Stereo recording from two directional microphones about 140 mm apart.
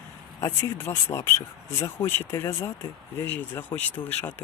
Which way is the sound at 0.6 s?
20° left (ahead or behind).